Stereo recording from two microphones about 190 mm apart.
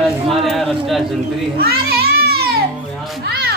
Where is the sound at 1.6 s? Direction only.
55° right (ahead or behind).